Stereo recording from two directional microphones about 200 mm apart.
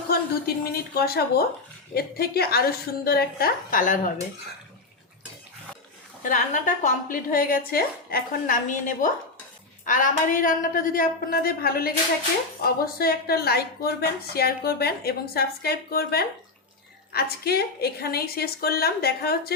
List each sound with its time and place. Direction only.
0.1 s a woman's voice: 50° left (ahead or behind)
6.2 s a woman's voice: 40° left (ahead or behind)